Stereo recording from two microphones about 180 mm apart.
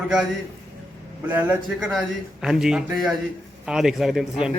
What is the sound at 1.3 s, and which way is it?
A man's voice, 10° right (ahead or behind).